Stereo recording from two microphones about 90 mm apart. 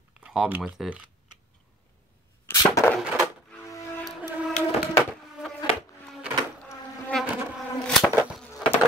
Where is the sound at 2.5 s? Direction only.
35° left (ahead or behind).